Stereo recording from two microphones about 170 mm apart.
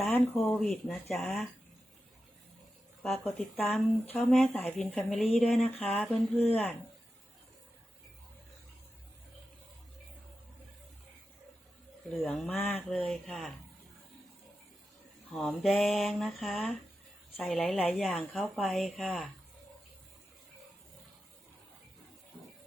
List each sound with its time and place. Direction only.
0.3 s speech: 5° left (ahead or behind)
3.2 s speech: 5° left (ahead or behind)
12.1 s speech: 5° left (ahead or behind)
15.3 s speech: centre (ahead or behind)